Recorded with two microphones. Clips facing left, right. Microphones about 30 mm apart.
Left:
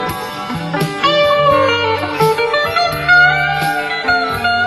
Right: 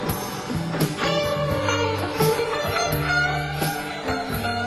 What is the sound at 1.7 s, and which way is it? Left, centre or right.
Music, left.